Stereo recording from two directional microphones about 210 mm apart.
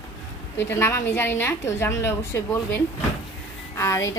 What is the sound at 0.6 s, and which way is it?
A woman's voice, 10° left (ahead or behind).